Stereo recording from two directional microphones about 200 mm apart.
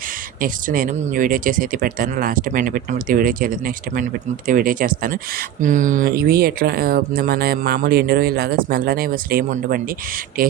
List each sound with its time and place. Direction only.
0.4 s speech: 45° right (ahead or behind)